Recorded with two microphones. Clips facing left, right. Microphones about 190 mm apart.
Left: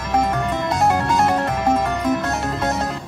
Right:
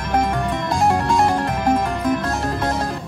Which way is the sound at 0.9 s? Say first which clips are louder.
Right 1 dB; 25° right (ahead or behind).